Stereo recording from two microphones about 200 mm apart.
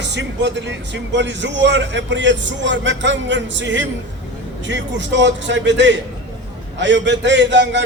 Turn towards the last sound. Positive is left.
turn(degrees=-65)  # may be behind; listen again after turning